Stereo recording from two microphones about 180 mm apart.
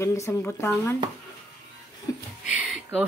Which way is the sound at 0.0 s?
15° left (ahead or behind).